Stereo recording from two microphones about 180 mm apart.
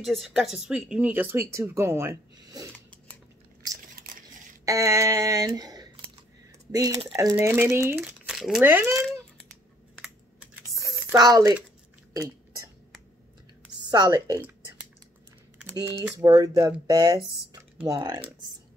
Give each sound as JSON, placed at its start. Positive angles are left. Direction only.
{"t": 0.0, "sound": "speech", "side_deg": 0}
{"t": 4.0, "sound": "a sound", "side_deg": -55}
{"t": 4.6, "sound": "speech", "side_deg": -15}
{"t": 8.3, "sound": "speech", "side_deg": 0}
{"t": 10.8, "sound": "a sound", "side_deg": -20}
{"t": 13.8, "sound": "speech", "side_deg": -20}
{"t": 15.7, "sound": "speech", "side_deg": -15}